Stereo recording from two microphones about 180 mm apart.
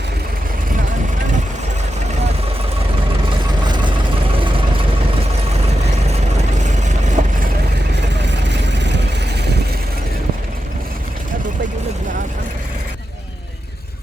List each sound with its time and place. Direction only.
7.2 s vehicle: 45° right (ahead or behind)